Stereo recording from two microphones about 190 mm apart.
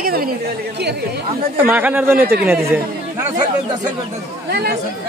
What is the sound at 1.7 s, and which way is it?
Speech, 10° right (ahead or behind).